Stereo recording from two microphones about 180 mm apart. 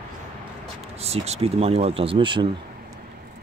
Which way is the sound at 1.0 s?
35° right (ahead or behind).